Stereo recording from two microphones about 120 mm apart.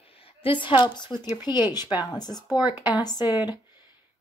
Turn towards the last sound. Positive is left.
turn(degrees=35)  # may be behind; listen again after turning